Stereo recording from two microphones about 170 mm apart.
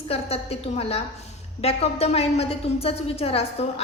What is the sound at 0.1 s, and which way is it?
A woman's voice, 35° left (ahead or behind).